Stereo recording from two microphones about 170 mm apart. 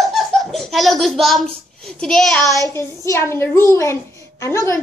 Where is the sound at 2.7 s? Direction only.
15° left (ahead or behind).